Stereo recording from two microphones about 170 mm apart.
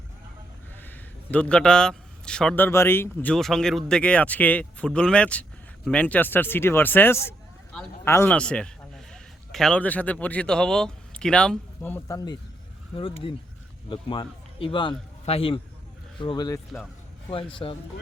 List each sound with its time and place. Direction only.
0.8 s a man's voice: 10° left (ahead or behind)
13.0 s speech: 30° left (ahead or behind)